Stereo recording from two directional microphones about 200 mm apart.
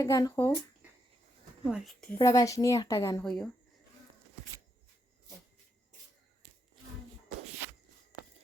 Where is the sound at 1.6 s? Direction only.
5° right (ahead or behind).